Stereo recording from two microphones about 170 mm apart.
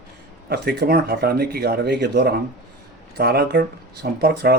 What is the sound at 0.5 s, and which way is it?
Speech, 70° right (ahead or behind).